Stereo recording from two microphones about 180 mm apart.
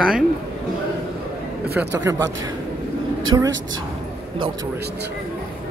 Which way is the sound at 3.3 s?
20° right (ahead or behind).